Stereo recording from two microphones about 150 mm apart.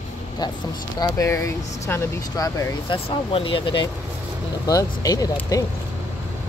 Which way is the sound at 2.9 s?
35° left (ahead or behind).